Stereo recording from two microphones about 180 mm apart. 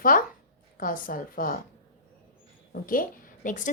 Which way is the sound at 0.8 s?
50° left (ahead or behind).